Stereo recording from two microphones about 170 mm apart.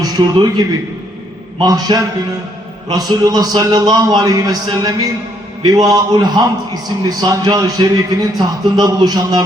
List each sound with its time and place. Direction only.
0.0 s a man's voice: 25° right (ahead or behind)
1.6 s a man's voice: 25° right (ahead or behind)